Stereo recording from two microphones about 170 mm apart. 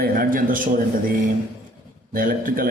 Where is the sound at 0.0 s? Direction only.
55° right (ahead or behind).